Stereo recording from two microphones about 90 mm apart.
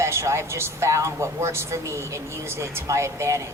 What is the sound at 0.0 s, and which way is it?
A woman's voice, 30° right (ahead or behind).